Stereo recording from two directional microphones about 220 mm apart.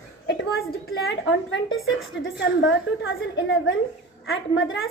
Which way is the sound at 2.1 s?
55° left (ahead or behind).